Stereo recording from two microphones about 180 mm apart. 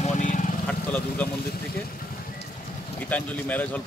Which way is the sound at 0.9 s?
10° left (ahead or behind).